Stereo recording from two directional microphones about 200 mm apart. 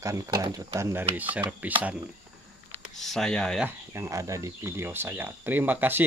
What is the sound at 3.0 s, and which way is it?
Speech, centre (ahead or behind).